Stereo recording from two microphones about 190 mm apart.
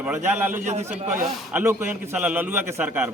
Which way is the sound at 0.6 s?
40° right (ahead or behind).